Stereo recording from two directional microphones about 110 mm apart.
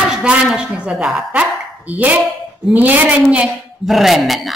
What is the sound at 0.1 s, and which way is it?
A woman's voice, 5° right (ahead or behind).